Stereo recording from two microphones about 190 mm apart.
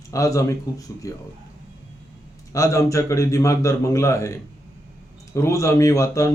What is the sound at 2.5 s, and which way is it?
Speech, 15° left (ahead or behind).